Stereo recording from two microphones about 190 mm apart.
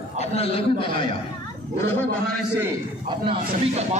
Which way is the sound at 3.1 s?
30° right (ahead or behind).